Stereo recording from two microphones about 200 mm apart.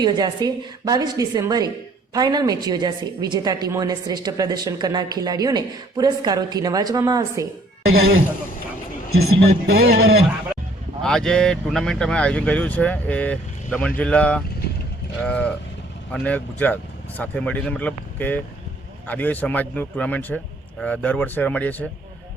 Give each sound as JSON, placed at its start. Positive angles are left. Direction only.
{"t": 0.0, "sound": "a woman's voice", "side_deg": -20}
{"t": 7.9, "sound": "speech", "side_deg": -50}
{"t": 9.7, "sound": "speech", "side_deg": -50}
{"t": 11.0, "sound": "a man's voice", "side_deg": 5}